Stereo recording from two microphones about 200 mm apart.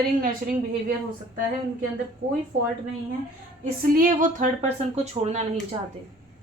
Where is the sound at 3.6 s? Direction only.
45° right (ahead or behind).